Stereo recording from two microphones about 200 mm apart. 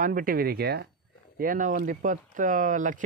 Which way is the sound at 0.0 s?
45° right (ahead or behind).